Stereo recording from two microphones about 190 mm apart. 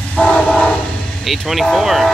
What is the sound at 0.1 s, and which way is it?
Train, 5° left (ahead or behind).